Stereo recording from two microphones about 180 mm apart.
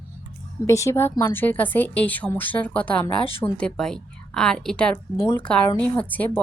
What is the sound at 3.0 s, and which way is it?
Speech, 30° left (ahead or behind).